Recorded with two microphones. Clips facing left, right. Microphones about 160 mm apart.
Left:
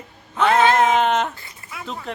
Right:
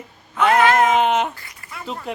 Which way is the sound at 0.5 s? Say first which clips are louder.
Even; 25° left (ahead or behind).